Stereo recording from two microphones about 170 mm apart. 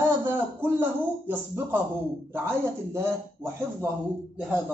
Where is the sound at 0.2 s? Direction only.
10° right (ahead or behind).